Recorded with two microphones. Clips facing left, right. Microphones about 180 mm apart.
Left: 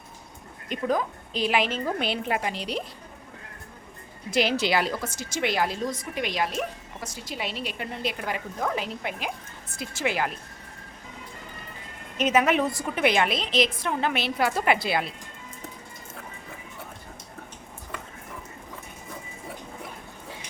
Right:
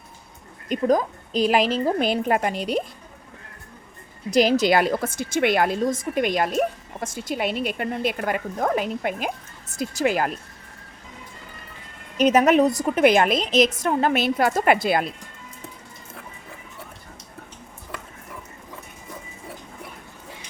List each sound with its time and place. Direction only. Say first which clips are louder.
0.7 s a woman's voice: right 6 dB; 40° right (ahead or behind)
4.3 s a woman's voice: right 6 dB; 40° right (ahead or behind)
12.1 s a woman's voice: right 6 dB; 40° right (ahead or behind)